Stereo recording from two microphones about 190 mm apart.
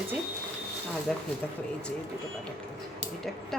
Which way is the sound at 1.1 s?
5° left (ahead or behind).